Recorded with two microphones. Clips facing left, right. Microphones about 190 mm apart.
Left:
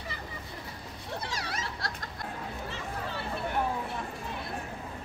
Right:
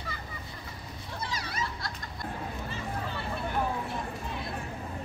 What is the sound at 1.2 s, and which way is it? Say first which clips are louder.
Children playing: right 5 dB; 75° left (ahead or behind).